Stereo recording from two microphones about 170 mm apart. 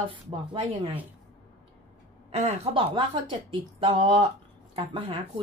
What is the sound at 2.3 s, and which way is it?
A woman's voice, 40° right (ahead or behind).